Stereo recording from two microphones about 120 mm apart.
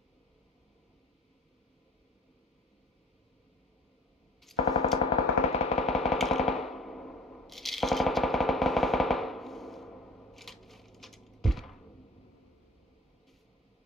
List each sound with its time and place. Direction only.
4.6 s a sound: 50° left (ahead or behind)
5.1 s music: 60° left (ahead or behind)
5.9 s machine gun: centre (ahead or behind)